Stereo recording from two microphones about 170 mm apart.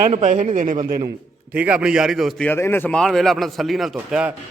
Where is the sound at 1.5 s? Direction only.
5° right (ahead or behind).